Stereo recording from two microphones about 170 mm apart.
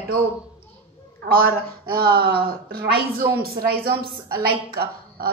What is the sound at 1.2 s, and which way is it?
A man's voice, 60° right (ahead or behind).